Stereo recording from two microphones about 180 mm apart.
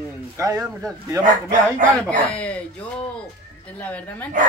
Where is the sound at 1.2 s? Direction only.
45° right (ahead or behind).